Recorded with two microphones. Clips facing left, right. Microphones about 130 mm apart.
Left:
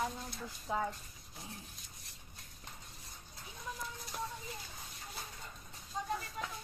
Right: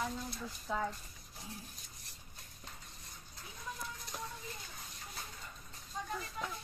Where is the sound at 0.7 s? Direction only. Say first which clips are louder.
Left 1 dB; 25° left (ahead or behind).